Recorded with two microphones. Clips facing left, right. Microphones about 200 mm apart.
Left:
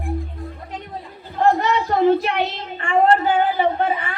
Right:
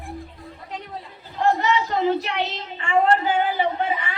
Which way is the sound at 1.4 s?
55° left (ahead or behind).